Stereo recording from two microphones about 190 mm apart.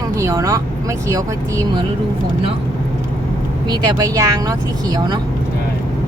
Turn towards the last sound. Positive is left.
turn(degrees=-20)  # may be behind; listen again after turning